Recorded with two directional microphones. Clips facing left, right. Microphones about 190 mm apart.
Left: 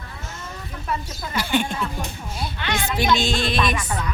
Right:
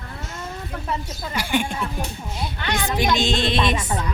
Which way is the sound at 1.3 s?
15° right (ahead or behind).